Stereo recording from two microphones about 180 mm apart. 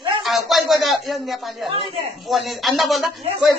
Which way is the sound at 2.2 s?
Centre (ahead or behind).